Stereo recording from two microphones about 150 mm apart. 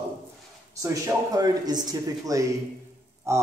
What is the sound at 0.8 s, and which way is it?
A man's voice, 25° right (ahead or behind).